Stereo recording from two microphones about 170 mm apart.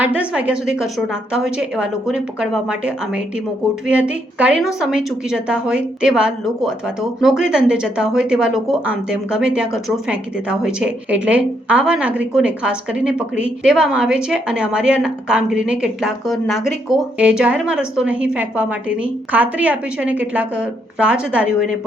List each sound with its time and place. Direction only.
0.0 s a woman's voice: 5° right (ahead or behind)